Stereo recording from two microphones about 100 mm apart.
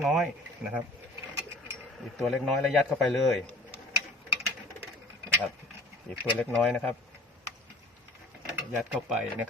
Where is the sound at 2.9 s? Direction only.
5° left (ahead or behind).